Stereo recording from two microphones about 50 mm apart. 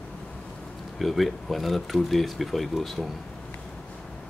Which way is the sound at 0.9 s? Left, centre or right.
Centre.